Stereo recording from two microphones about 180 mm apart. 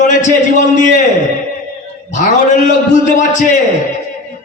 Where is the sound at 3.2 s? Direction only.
45° left (ahead or behind).